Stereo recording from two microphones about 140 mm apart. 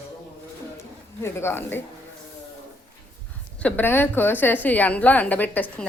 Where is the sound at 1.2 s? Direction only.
15° left (ahead or behind).